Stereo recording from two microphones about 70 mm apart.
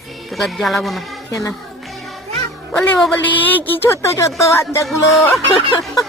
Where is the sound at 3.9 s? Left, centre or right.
Left.